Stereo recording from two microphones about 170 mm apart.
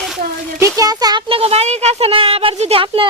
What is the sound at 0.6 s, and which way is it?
Speech, 20° right (ahead or behind).